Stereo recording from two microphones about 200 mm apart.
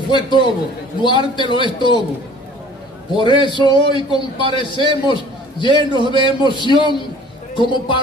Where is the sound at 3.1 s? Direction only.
25° left (ahead or behind).